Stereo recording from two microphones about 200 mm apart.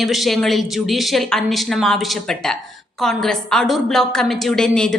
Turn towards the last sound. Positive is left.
turn(degrees=5)  # may be behind; listen again after turning